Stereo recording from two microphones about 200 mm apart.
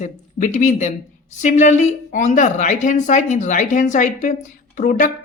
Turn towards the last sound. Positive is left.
turn(degrees=40)  # may be behind; listen again after turning